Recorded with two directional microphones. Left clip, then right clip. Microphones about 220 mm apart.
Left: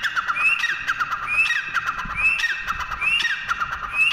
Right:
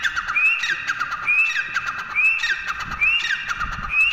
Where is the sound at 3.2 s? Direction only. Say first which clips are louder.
Left 1 dB; 10° left (ahead or behind).